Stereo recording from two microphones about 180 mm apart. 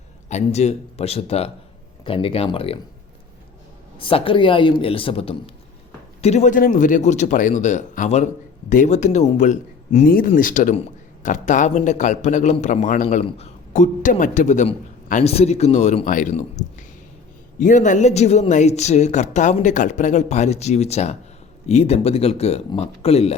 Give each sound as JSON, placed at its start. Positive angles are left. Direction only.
{"t": 0.3, "sound": "speech", "side_deg": 40}
{"t": 3.9, "sound": "a man's voice", "side_deg": 30}